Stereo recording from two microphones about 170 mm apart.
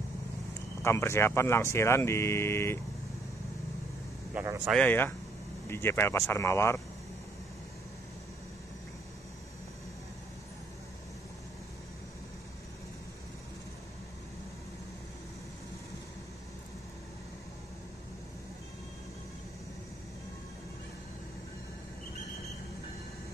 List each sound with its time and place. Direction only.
0.8 s speech: 15° left (ahead or behind)
4.6 s speech: 10° left (ahead or behind)